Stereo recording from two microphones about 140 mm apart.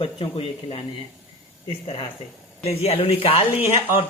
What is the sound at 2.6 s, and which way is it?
Speech, 45° left (ahead or behind).